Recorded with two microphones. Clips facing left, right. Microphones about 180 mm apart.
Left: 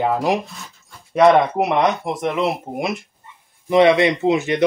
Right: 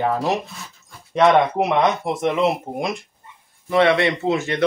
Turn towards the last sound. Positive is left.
turn(degrees=15)  # may be behind; listen again after turning